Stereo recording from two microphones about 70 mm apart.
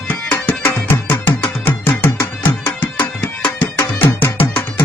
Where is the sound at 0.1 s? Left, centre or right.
Left.